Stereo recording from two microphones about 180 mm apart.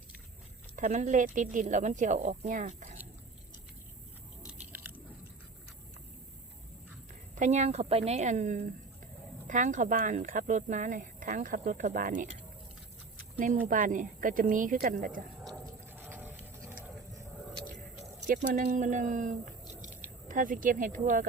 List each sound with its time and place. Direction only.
0.8 s a woman's voice: 40° right (ahead or behind)
4.7 s chewing: 10° right (ahead or behind)
7.3 s a woman's voice: 40° right (ahead or behind)
13.7 s speech: 50° right (ahead or behind)
15.9 s a sound: 10° right (ahead or behind)
18.3 s speech: 45° right (ahead or behind)